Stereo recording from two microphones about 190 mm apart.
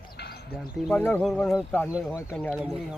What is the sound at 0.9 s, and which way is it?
Speech, 5° left (ahead or behind).